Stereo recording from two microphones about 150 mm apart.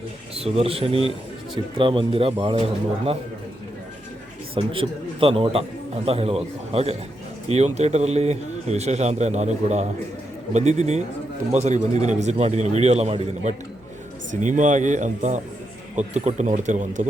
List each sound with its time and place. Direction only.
0.3 s a man's voice: 40° right (ahead or behind)
4.5 s a man's voice: 35° right (ahead or behind); by 17.1 s 55° right (ahead or behind)